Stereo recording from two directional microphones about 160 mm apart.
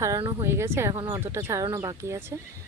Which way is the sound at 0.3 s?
15° right (ahead or behind).